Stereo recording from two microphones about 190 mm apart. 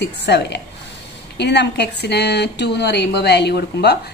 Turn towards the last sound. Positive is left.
turn(degrees=60)  # may be behind; listen again after turning